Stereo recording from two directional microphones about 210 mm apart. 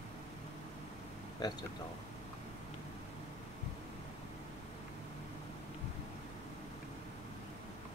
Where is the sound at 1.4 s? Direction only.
20° left (ahead or behind).